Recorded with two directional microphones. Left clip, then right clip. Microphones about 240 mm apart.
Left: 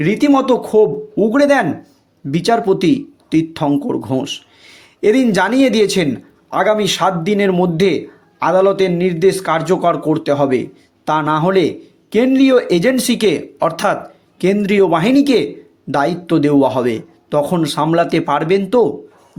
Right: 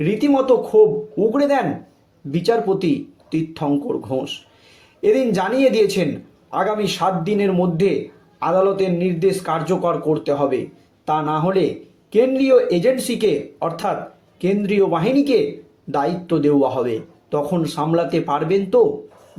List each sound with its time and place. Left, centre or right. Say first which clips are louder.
0.0 s a man's voice: left 4 dB; left